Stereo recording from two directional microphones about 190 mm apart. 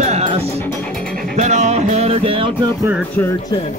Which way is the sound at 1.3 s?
35° right (ahead or behind).